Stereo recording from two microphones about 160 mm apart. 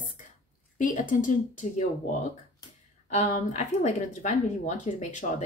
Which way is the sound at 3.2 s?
50° left (ahead or behind).